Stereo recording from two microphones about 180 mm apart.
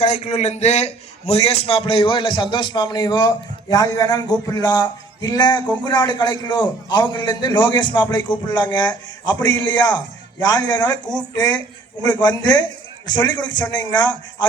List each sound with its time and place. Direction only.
0.0 s a man's voice: 40° left (ahead or behind); by 14.4 s 25° left (ahead or behind)